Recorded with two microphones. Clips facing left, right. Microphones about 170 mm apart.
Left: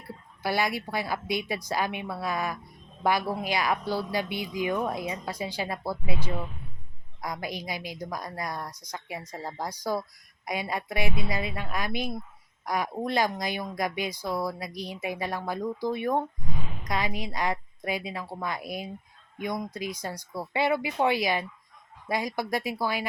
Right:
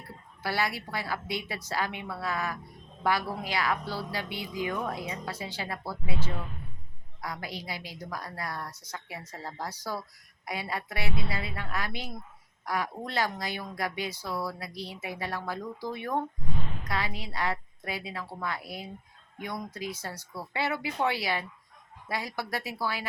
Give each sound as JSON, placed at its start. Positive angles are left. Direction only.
{"t": 0.4, "sound": "a woman's voice", "side_deg": 15}